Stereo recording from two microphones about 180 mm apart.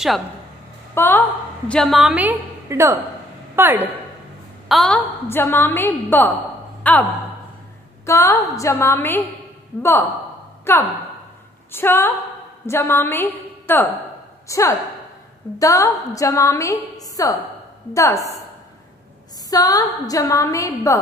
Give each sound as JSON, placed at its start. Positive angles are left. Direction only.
{"t": 0.9, "sound": "a woman's voice", "side_deg": 10}
{"t": 4.6, "sound": "a woman's voice", "side_deg": 0}
{"t": 19.5, "sound": "a woman's voice", "side_deg": 20}